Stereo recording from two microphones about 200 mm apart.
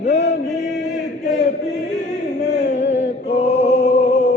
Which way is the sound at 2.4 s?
60° left (ahead or behind).